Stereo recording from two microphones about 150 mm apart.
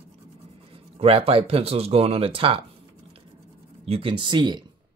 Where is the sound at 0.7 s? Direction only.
40° right (ahead or behind).